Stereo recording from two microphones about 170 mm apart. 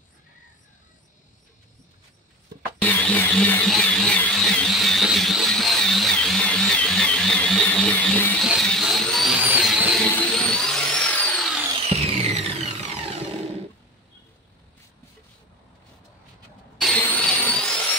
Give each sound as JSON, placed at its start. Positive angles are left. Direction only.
{"t": 2.8, "sound": "music", "side_deg": 10}
{"t": 8.5, "sound": "a sound", "side_deg": 0}
{"t": 11.9, "sound": "music", "side_deg": -40}
{"t": 16.8, "sound": "vacuum cleaner", "side_deg": 5}